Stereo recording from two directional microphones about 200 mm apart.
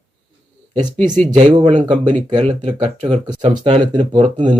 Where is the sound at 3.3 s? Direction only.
20° right (ahead or behind).